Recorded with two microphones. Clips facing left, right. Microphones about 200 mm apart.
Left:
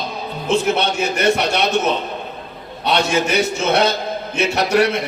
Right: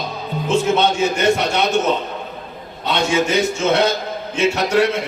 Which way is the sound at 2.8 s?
70° left (ahead or behind).